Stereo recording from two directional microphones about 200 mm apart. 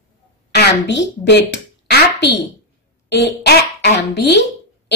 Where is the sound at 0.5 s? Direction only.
60° left (ahead or behind).